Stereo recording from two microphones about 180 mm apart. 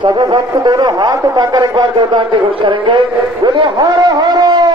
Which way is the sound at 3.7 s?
25° right (ahead or behind).